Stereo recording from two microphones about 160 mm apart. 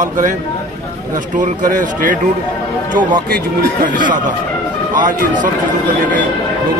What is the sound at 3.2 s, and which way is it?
Speech, 60° right (ahead or behind).